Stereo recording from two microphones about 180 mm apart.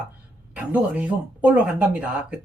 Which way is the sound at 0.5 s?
10° right (ahead or behind).